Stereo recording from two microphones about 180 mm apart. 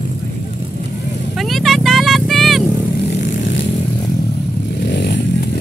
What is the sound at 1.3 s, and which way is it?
Vehicle, centre (ahead or behind).